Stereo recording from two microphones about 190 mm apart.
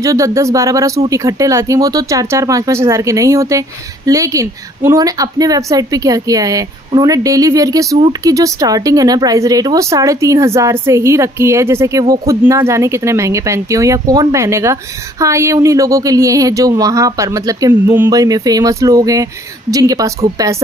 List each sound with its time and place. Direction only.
0.0 s speech: 15° right (ahead or behind)